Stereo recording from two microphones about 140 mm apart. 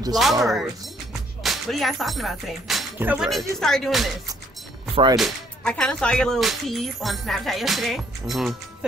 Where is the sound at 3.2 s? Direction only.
Centre (ahead or behind).